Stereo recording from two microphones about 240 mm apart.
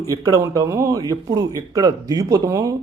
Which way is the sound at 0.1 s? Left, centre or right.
Centre.